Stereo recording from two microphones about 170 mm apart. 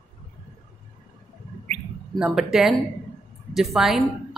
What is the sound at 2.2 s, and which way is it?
Speech, 5° right (ahead or behind).